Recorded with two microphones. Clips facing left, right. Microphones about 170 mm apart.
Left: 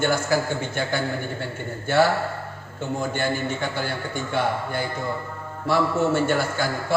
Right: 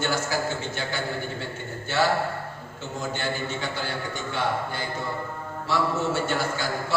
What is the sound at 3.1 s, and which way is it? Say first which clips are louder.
A man's voice: left 4 dB; 50° left (ahead or behind).